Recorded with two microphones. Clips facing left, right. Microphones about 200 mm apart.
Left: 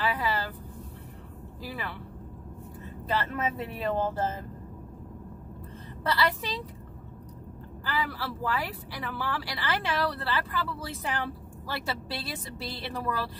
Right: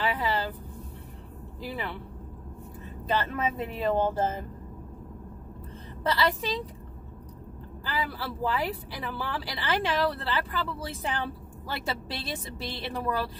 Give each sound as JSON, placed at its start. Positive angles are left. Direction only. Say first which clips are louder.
{"t": 0.0, "sound": "vehicle", "louder": "right 1 dB", "side_deg": -25}
{"t": 1.6, "sound": "speech", "louder": "right 3 dB", "side_deg": -20}
{"t": 3.2, "sound": "speech", "louder": "right 1 dB", "side_deg": -20}
{"t": 6.0, "sound": "speech", "louder": "right 2 dB", "side_deg": -20}
{"t": 7.8, "sound": "speech", "louder": "even", "side_deg": -20}